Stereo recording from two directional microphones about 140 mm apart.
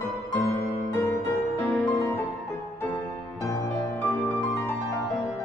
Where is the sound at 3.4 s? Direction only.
25° left (ahead or behind).